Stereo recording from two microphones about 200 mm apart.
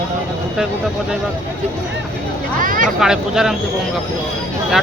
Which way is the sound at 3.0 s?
5° right (ahead or behind).